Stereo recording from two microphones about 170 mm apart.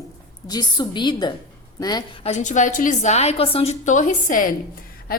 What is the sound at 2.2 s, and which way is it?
A woman's voice, 45° left (ahead or behind).